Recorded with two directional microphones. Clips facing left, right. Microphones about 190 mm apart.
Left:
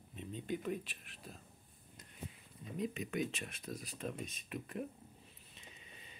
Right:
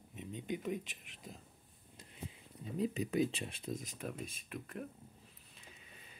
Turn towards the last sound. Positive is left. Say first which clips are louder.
# left 1 dB
turn(degrees=0)  # may be behind; listen again after turning